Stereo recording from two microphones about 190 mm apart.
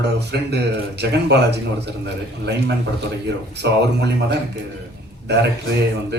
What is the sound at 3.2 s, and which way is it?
Speech, 65° right (ahead or behind).